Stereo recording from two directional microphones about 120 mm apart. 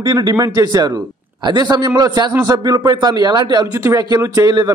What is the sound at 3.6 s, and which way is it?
A man's voice, 25° right (ahead or behind).